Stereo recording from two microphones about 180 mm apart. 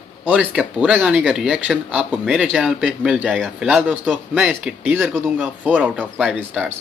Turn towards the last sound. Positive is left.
turn(degrees=-5)  # may be behind; listen again after turning